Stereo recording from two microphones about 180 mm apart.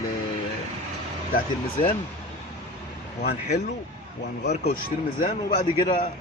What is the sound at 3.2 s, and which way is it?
Speech, 60° left (ahead or behind).